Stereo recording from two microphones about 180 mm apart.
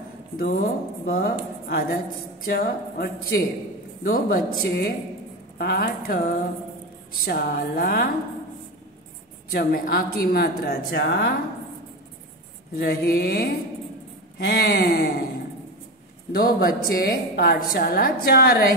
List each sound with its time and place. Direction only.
0.4 s a woman's voice: 55° left (ahead or behind)
9.5 s a woman's voice: 60° left (ahead or behind)
12.7 s a woman's voice: 55° left (ahead or behind)
14.5 s a woman's voice: 55° left (ahead or behind)
16.3 s a woman's voice: 55° left (ahead or behind)